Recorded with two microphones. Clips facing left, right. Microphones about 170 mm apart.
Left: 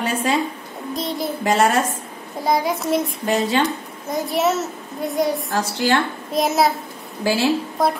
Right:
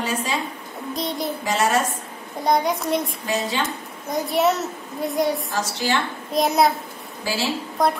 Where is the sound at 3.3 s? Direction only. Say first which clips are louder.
Left 6 dB; 60° left (ahead or behind).